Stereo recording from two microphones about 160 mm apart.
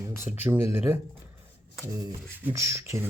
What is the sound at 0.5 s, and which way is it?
Speech, 15° right (ahead or behind).